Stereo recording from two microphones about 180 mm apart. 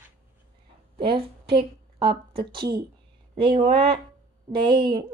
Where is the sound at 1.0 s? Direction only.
30° right (ahead or behind).